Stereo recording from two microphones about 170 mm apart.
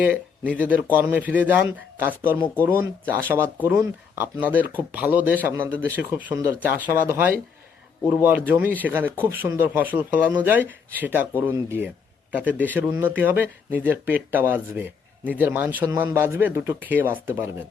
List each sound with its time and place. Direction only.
0.0 s speech: 10° right (ahead or behind)
12.9 s speech: 10° right (ahead or behind)